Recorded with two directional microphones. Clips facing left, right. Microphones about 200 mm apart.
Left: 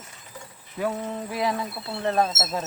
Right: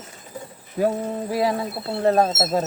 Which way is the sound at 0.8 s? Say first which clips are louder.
Right 6 dB; 35° right (ahead or behind).